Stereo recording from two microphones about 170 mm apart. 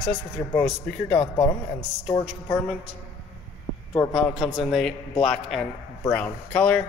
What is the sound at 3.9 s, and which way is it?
Speech, 20° left (ahead or behind).